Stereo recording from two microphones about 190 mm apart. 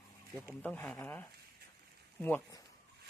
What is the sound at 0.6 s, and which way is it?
Speech, 10° left (ahead or behind).